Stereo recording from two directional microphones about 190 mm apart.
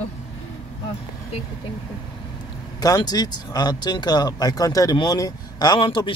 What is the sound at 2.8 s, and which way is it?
Speech, 20° left (ahead or behind).